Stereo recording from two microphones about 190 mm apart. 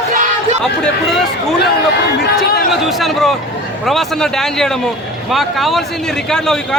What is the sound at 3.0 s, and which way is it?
A man's voice, centre (ahead or behind).